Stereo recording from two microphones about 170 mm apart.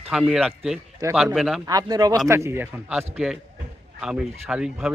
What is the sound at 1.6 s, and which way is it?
A man's voice, 20° right (ahead or behind).